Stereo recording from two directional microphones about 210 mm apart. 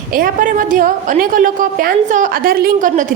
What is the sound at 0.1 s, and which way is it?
A woman's voice, 40° right (ahead or behind).